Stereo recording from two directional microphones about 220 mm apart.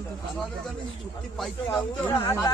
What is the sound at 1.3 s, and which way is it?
Speech, centre (ahead or behind).